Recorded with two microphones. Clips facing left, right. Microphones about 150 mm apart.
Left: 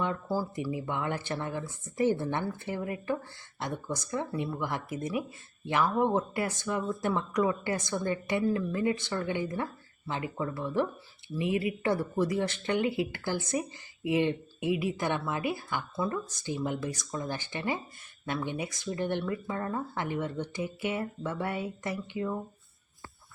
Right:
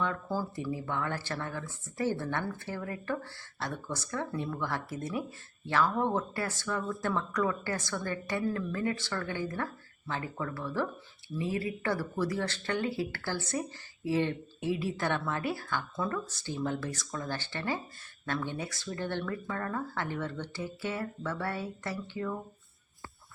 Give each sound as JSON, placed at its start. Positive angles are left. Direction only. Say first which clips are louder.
{"t": 0.0, "sound": "speech", "louder": "left 2 dB", "side_deg": 15}